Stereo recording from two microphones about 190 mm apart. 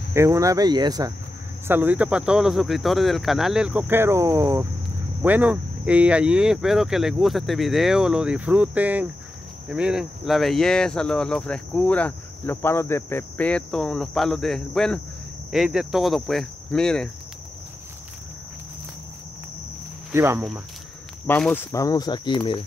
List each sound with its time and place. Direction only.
0.1 s speech: 15° right (ahead or behind)
1.7 s cricket: 10° right (ahead or behind)
20.1 s speech: 10° right (ahead or behind)
21.3 s cricket: 5° left (ahead or behind)
21.7 s speech: 20° left (ahead or behind)